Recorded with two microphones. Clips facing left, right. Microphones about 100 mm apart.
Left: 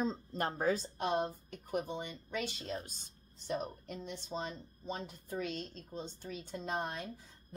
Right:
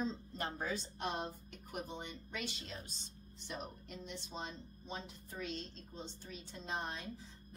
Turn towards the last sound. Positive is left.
turn(degrees=50)  # may be behind; listen again after turning